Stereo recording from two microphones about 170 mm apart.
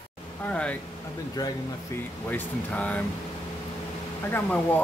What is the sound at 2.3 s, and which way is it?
Speech, 10° left (ahead or behind).